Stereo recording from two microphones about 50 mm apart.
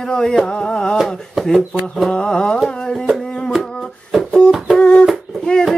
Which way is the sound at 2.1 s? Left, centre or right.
Centre.